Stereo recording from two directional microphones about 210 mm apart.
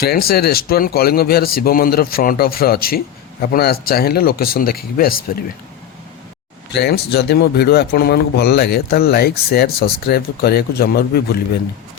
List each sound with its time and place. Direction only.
0.0 s speech: 45° left (ahead or behind)
6.7 s speech: 50° left (ahead or behind)